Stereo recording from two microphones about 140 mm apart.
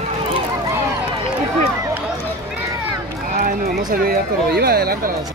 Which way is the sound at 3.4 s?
85° right.